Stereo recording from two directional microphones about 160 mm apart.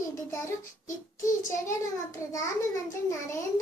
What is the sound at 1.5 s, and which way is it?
A child's voice, 20° left (ahead or behind).